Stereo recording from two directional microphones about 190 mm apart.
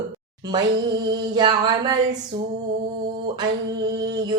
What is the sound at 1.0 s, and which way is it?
Female singing, 20° right (ahead or behind).